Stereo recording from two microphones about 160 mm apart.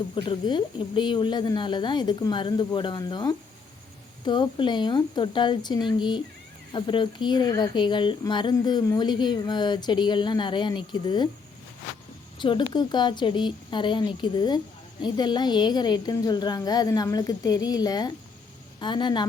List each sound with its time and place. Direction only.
0.1 s speech: 30° left (ahead or behind)
12.4 s speech: 30° left (ahead or behind)